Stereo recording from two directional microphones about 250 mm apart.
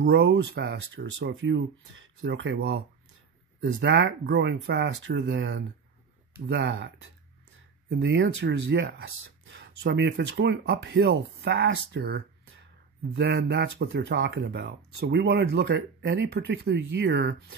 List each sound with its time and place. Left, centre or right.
0.0 s speech: right
7.9 s speech: right